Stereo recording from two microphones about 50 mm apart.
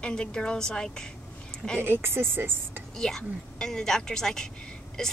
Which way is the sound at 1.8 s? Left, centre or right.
Right.